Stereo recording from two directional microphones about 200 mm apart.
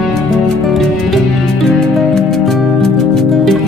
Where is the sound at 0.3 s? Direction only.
Centre (ahead or behind).